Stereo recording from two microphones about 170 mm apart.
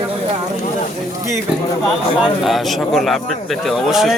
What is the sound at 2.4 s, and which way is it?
A man's voice, centre (ahead or behind).